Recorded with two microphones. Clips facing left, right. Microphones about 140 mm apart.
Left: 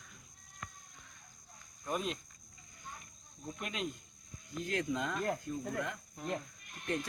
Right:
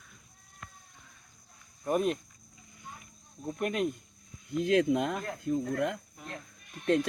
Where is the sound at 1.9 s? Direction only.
55° right (ahead or behind).